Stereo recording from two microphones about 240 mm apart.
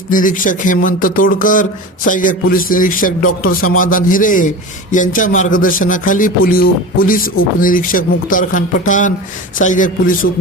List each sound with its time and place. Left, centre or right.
0.1 s a man's voice: left